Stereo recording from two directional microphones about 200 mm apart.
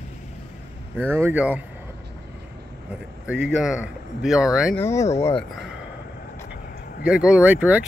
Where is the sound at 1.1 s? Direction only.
10° right (ahead or behind).